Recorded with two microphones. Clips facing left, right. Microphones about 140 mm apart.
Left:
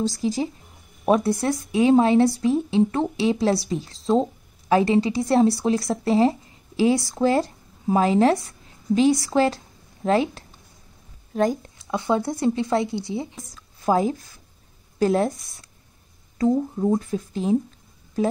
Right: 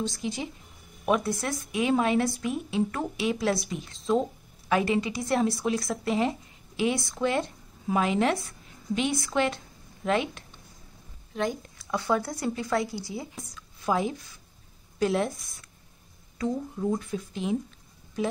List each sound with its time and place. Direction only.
0.0 s speech: 40° left (ahead or behind)
11.9 s a woman's voice: 20° left (ahead or behind)
13.8 s speech: 40° left (ahead or behind)
16.3 s speech: 35° left (ahead or behind)